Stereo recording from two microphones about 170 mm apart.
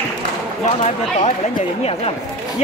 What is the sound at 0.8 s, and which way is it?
Speech, 40° left (ahead or behind).